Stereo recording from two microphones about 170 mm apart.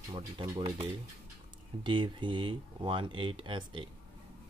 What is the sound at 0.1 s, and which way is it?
Speech, 25° right (ahead or behind).